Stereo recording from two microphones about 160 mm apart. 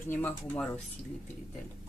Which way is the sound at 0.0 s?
10° left (ahead or behind).